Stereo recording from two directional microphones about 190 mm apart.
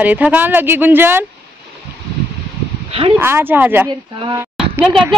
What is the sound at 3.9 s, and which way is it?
Speech, 25° right (ahead or behind).